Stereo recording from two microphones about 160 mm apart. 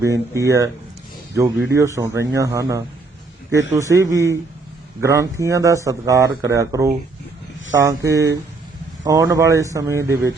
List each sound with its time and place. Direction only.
0.0 s speech: 20° right (ahead or behind)
1.7 s speech: 20° right (ahead or behind)